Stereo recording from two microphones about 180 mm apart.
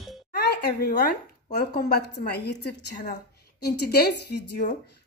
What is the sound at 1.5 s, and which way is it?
A woman's voice, 60° left (ahead or behind).